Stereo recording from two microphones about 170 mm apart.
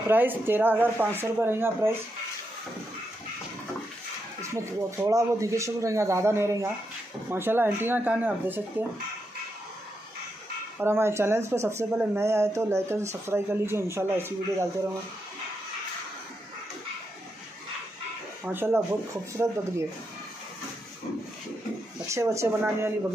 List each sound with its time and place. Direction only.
0.1 s speech: 10° right (ahead or behind)
4.4 s speech: 15° right (ahead or behind)
10.8 s speech: 15° right (ahead or behind)
18.4 s speech: 10° right (ahead or behind)
22.0 s speech: 15° right (ahead or behind)